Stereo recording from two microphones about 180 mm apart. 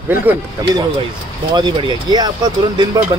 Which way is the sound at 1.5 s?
25° right (ahead or behind).